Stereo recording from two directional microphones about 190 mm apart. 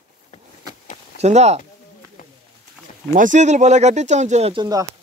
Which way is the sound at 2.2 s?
45° left (ahead or behind).